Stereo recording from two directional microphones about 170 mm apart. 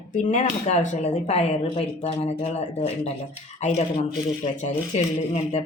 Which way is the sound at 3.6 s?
45° left (ahead or behind).